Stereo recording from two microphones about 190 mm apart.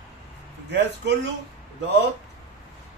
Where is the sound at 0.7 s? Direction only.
65° right (ahead or behind).